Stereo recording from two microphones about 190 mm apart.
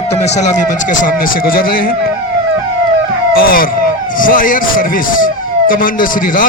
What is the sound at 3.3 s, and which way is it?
A man's voice, 50° left (ahead or behind).